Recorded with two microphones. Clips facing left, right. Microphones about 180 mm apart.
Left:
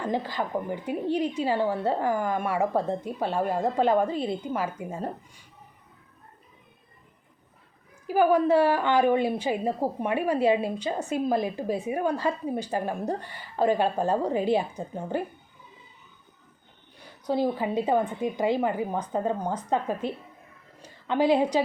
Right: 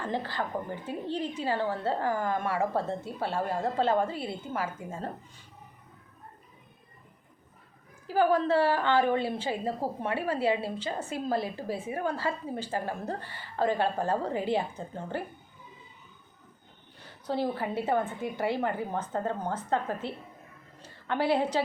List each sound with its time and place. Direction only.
0.0 s a woman's voice: 15° left (ahead or behind)
8.0 s a woman's voice: 15° left (ahead or behind)
17.0 s a woman's voice: 15° left (ahead or behind)